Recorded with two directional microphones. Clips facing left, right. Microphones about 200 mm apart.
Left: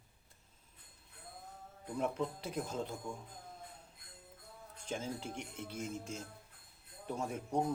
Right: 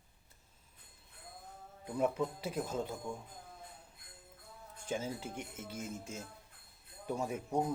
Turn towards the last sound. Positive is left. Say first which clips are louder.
# right 1 dB
turn(degrees=-10)  # may be behind; listen again after turning